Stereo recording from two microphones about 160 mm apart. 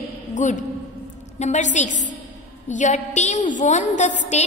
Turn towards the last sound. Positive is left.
turn(degrees=50)  # may be behind; listen again after turning